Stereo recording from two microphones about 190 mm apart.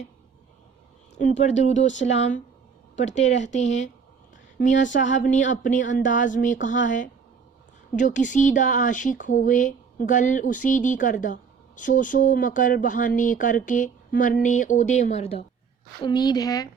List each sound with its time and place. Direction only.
1.4 s speech: 35° left (ahead or behind)
16.0 s a woman's voice: 20° left (ahead or behind)